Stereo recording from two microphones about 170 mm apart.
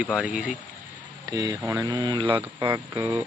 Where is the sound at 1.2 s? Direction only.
20° right (ahead or behind).